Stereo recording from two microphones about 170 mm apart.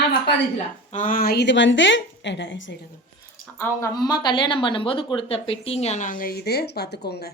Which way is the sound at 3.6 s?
20° left (ahead or behind).